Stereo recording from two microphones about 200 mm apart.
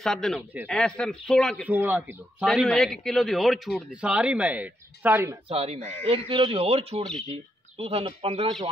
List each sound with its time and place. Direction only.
0.0 s a man's voice: centre (ahead or behind)
1.7 s a man's voice: 10° right (ahead or behind)
5.5 s speech: 30° right (ahead or behind)